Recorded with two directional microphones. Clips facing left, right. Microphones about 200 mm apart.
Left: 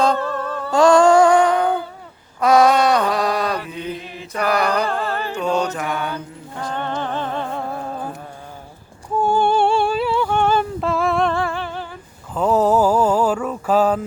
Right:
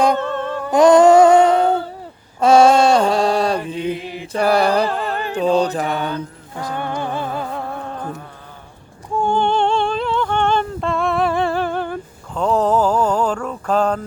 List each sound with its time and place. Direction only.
0.0 s a sound: 20° right (ahead or behind)
2.4 s chant: 25° right (ahead or behind)
4.3 s mantra: 30° right (ahead or behind)
4.9 s mantra: centre (ahead or behind)
5.1 s mantra: 15° right (ahead or behind)
5.4 s mantra: 35° right (ahead or behind)
6.6 s music: 10° right (ahead or behind)
9.1 s humming: 5° left (ahead or behind)
11.5 s humming: 50° right (ahead or behind)
12.3 s mantra: 5° left (ahead or behind)